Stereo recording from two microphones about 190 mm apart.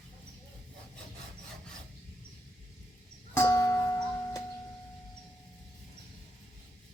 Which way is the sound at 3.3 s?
15° left (ahead or behind).